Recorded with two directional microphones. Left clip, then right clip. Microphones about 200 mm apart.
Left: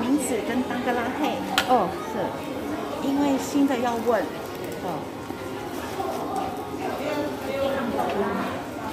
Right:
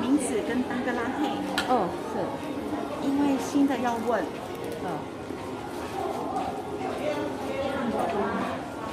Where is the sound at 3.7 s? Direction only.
10° left (ahead or behind).